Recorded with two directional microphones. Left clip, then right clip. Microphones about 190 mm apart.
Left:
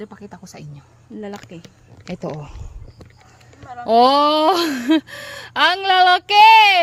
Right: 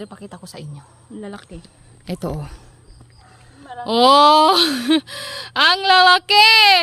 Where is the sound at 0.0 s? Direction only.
35° right (ahead or behind).